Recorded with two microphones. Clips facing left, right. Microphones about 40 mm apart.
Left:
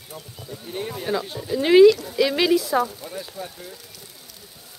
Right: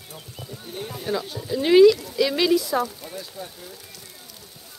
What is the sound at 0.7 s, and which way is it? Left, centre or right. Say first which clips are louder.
Speech: left 2 dB; centre.